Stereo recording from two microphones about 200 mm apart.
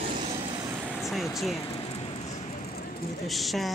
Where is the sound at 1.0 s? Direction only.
Centre (ahead or behind).